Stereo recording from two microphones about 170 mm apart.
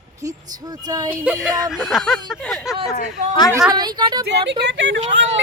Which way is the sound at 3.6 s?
25° right (ahead or behind).